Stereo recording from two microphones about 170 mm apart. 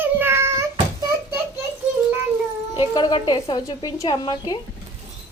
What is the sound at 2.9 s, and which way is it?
A woman's voice, 25° left (ahead or behind).